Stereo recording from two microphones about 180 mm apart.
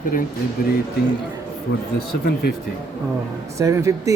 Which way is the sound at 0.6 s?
55° left (ahead or behind).